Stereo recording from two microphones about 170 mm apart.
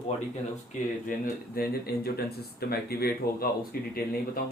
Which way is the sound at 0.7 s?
55° left (ahead or behind).